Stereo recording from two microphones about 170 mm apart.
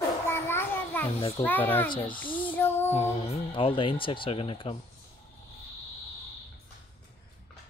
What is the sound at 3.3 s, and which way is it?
Speech, 30° left (ahead or behind).